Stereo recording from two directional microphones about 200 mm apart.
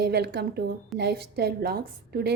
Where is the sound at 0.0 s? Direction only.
55° right (ahead or behind).